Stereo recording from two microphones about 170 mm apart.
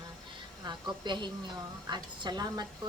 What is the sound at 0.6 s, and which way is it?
A woman's voice, 25° right (ahead or behind).